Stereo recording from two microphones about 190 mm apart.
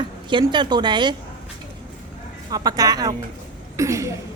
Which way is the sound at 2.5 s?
20° right (ahead or behind).